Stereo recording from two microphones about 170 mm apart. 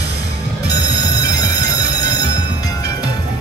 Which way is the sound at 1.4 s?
20° left (ahead or behind).